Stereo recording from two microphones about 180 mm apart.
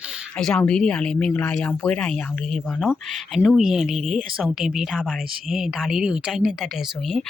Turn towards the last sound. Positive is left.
turn(degrees=0)  # may be behind; listen again after turning